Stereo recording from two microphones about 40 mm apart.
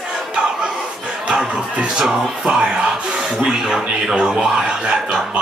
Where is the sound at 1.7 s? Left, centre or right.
Right.